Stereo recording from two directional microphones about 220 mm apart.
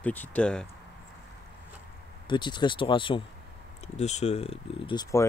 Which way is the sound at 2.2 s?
20° left (ahead or behind).